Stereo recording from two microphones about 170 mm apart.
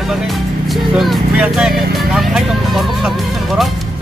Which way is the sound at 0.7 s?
Centre (ahead or behind).